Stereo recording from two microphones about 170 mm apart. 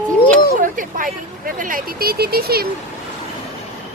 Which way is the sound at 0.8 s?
55° right (ahead or behind).